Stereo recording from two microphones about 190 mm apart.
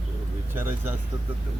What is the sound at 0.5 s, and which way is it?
Speech, 10° right (ahead or behind).